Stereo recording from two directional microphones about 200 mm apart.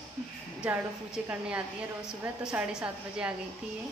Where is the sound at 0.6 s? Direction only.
5° right (ahead or behind).